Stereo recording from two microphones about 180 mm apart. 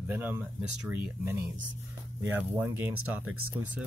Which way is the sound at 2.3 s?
10° right (ahead or behind).